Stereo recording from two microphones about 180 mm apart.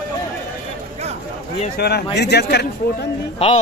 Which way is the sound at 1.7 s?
65° left (ahead or behind).